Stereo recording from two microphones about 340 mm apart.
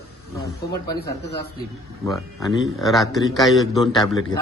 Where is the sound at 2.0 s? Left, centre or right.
Centre.